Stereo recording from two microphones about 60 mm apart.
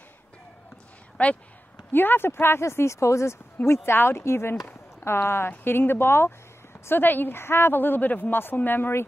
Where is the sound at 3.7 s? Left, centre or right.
Left.